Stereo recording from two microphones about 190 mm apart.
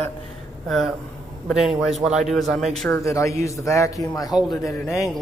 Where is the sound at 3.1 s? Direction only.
15° left (ahead or behind).